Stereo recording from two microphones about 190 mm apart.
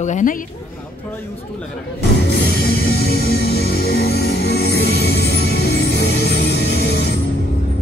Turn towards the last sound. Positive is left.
turn(degrees=60)  # may be behind; listen again after turning